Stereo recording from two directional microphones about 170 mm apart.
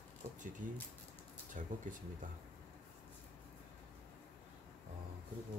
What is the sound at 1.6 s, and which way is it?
Speech, 45° right (ahead or behind).